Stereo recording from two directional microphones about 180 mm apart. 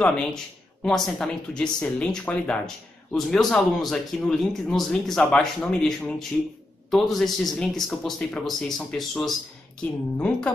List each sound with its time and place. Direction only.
0.0 s speech: 5° left (ahead or behind)